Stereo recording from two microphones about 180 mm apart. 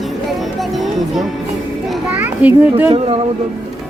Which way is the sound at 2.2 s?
10° right (ahead or behind).